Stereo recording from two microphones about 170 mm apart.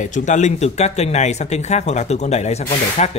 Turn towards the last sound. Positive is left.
turn(degrees=40)  # may be behind; listen again after turning